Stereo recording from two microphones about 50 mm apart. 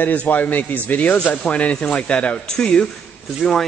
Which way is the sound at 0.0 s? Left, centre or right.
Left.